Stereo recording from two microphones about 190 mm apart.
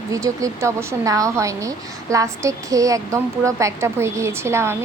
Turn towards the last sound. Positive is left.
turn(degrees=-15)  # may be behind; listen again after turning